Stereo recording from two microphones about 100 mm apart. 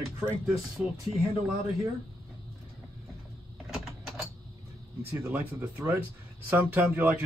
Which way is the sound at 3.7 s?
5° right (ahead or behind).